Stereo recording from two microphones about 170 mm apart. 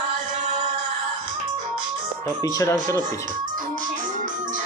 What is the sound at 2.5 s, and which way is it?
Speech, 20° left (ahead or behind).